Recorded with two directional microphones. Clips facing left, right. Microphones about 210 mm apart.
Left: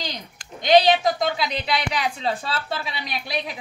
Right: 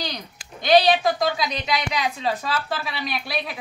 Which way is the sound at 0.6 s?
20° left (ahead or behind).